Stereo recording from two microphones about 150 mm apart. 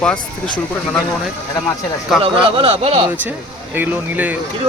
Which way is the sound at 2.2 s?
40° right (ahead or behind).